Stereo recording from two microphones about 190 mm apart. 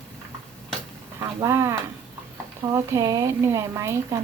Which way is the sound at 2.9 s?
20° right (ahead or behind).